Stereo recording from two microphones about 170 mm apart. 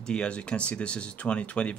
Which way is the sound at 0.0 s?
5° left (ahead or behind).